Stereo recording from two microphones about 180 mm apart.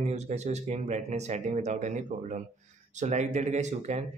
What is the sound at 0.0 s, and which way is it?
Speech, 40° right (ahead or behind).